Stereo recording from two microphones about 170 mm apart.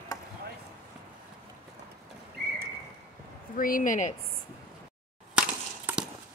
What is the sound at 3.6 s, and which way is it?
Speech, 55° left (ahead or behind).